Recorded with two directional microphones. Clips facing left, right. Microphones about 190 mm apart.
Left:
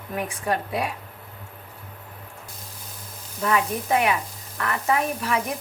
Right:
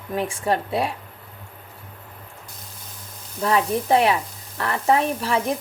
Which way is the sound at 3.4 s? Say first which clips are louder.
Right 3 dB; 30° right (ahead or behind).